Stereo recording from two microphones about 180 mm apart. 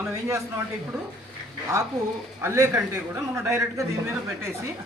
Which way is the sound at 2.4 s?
15° right (ahead or behind).